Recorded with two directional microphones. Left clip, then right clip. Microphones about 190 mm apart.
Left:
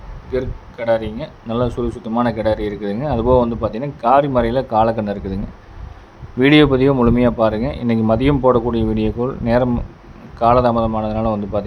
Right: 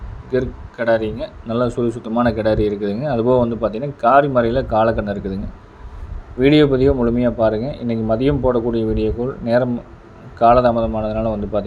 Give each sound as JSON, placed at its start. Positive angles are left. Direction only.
{"t": 0.3, "sound": "speech", "side_deg": -5}
{"t": 6.4, "sound": "speech", "side_deg": 10}